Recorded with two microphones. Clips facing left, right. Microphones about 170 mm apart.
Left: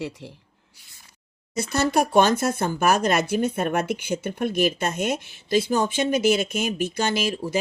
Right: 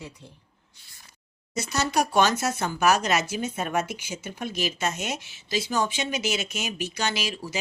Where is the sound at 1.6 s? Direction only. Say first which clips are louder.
Left 4 dB; 55° left (ahead or behind).